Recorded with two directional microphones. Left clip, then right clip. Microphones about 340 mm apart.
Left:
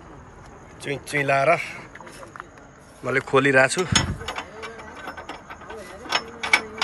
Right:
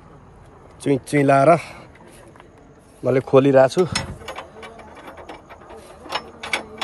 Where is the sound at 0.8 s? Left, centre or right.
Centre.